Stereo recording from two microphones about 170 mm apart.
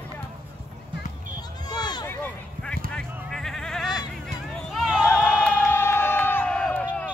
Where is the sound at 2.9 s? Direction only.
5° left (ahead or behind).